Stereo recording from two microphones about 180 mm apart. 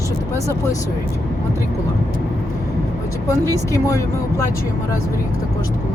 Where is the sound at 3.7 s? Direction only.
15° left (ahead or behind).